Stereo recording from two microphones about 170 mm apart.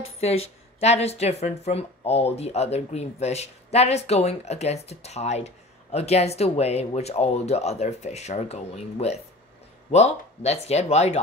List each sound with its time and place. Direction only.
0.2 s speech: 40° left (ahead or behind)